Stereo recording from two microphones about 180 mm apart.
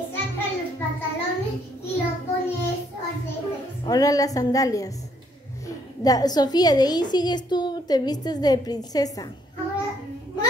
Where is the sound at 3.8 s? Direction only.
20° left (ahead or behind).